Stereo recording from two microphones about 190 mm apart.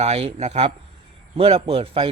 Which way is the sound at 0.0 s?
35° right (ahead or behind).